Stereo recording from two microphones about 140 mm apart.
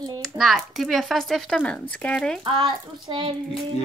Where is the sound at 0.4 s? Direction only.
Centre (ahead or behind).